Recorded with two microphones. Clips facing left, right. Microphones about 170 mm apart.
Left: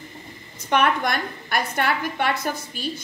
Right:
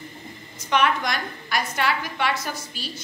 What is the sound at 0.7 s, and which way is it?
A woman's voice, 55° left (ahead or behind).